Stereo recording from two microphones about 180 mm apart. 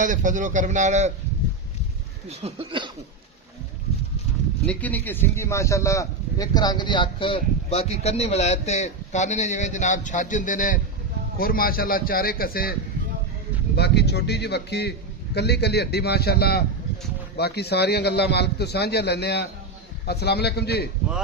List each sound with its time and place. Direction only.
0.0 s a man's voice: 45° right (ahead or behind)
2.3 s speech: 35° right (ahead or behind)
4.6 s a man's voice: 10° left (ahead or behind); by 12.7 s 55° left (ahead or behind)
13.7 s a man's voice: 65° left (ahead or behind)